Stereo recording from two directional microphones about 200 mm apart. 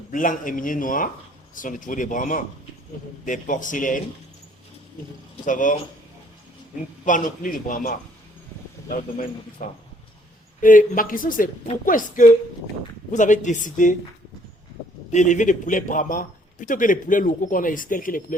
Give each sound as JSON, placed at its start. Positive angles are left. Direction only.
{"t": 0.1, "sound": "a woman's voice", "side_deg": 40}
{"t": 5.5, "sound": "a man's voice", "side_deg": 40}
{"t": 7.0, "sound": "a man's voice", "side_deg": 40}
{"t": 15.1, "sound": "a man's voice", "side_deg": 35}